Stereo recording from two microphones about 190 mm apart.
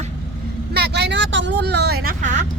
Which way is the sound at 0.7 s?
60° right (ahead or behind).